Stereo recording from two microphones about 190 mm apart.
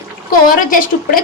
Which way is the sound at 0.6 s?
45° left (ahead or behind).